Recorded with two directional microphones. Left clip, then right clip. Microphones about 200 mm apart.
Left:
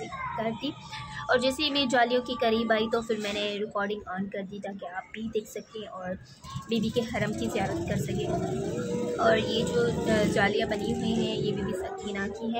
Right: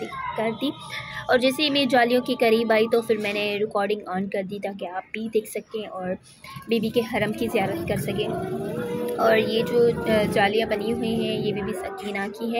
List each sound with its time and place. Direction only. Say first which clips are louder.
0.4 s a woman's voice: right 8 dB; 20° right (ahead or behind)
6.7 s speech: right 6 dB; 15° right (ahead or behind)
9.2 s speech: right 5 dB; 15° right (ahead or behind)